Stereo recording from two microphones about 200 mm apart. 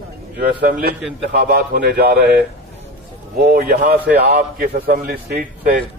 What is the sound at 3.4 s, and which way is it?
A man's voice, 50° right (ahead or behind).